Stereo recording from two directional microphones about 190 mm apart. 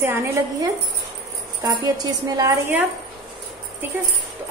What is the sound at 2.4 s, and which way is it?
Speech, 15° right (ahead or behind).